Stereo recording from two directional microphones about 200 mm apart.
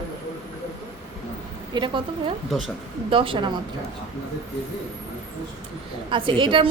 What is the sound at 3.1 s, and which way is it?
Speech, 25° right (ahead or behind).